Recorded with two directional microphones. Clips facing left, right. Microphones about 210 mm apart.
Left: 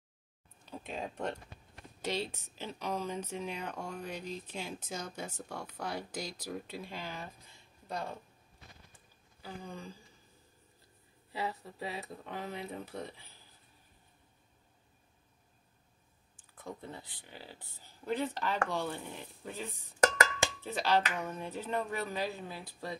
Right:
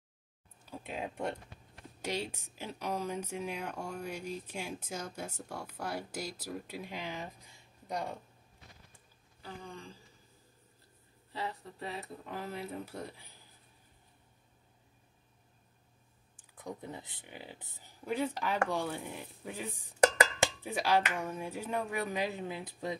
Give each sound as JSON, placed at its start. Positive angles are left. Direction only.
{"t": 0.7, "sound": "speech", "side_deg": -5}
{"t": 9.4, "sound": "speech", "side_deg": 5}
{"t": 11.3, "sound": "speech", "side_deg": 5}
{"t": 16.5, "sound": "speech", "side_deg": -15}